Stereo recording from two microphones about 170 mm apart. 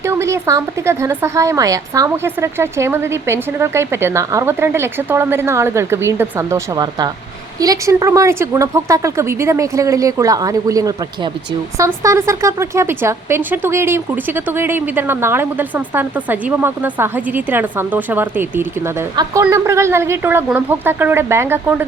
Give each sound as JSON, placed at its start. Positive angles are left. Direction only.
{"t": 0.0, "sound": "speech", "side_deg": -15}
{"t": 7.6, "sound": "speech", "side_deg": -20}